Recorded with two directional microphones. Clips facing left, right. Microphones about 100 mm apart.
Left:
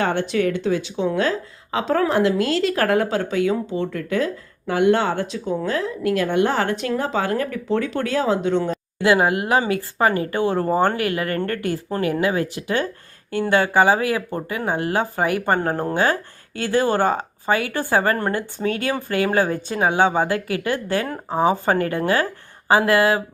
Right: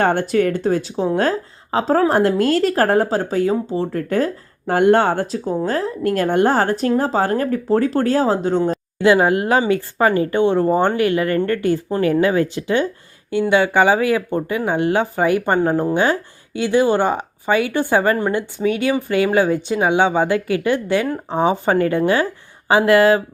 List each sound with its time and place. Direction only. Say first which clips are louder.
0.0 s speech: right 4 dB; 45° right (ahead or behind)
9.0 s speech: right 3 dB; 25° right (ahead or behind)
11.3 s speech: right 5 dB; 30° left (ahead or behind)
11.6 s speech: right 5 dB; 25° right (ahead or behind)